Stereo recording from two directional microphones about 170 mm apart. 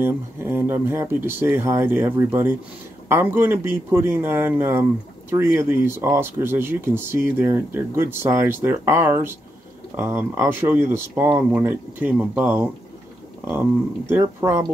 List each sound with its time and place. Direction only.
0.0 s speech: 15° right (ahead or behind)